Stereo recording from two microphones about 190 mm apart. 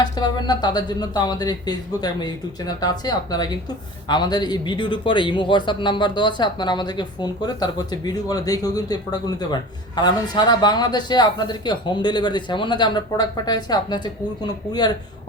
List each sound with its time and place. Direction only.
0.0 s speech: 20° left (ahead or behind)